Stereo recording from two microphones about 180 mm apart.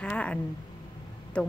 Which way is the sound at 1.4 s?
5° left (ahead or behind).